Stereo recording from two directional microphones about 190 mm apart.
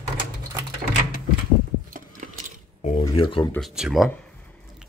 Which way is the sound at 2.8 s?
35° left (ahead or behind).